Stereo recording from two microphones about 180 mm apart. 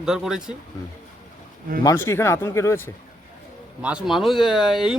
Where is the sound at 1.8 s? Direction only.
15° left (ahead or behind).